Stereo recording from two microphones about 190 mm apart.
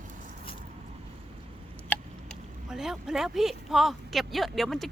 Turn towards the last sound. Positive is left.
turn(degrees=0)  # may be behind; listen again after turning